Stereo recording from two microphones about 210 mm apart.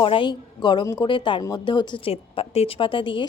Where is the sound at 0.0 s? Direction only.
25° left (ahead or behind).